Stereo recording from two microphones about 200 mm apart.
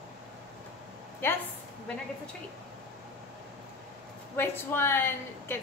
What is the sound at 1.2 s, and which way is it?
Speech, 10° left (ahead or behind).